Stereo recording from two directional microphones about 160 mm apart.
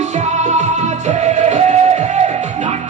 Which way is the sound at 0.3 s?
45° right (ahead or behind).